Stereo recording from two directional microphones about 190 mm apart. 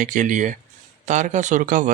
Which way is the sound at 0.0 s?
40° right (ahead or behind).